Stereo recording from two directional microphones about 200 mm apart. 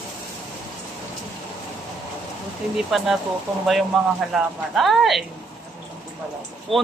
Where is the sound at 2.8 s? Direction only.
Centre (ahead or behind).